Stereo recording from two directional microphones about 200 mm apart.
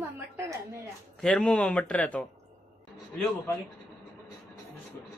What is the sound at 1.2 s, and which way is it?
Speech, 5° left (ahead or behind).